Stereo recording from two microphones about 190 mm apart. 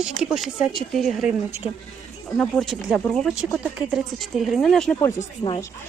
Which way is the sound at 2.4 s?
Centre (ahead or behind).